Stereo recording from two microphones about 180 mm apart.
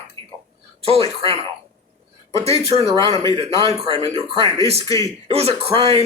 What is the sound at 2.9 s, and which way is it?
Speech, 20° left (ahead or behind).